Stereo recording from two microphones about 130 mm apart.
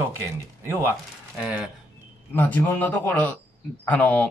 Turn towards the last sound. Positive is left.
turn(degrees=15)  # may be behind; listen again after turning